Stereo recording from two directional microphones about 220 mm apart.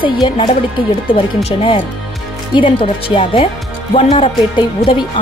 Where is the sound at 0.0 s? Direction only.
25° left (ahead or behind).